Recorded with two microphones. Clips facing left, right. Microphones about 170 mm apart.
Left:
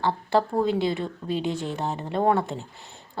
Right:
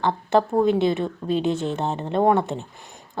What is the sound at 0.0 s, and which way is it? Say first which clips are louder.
A woman's voice: right 3 dB; 20° right (ahead or behind).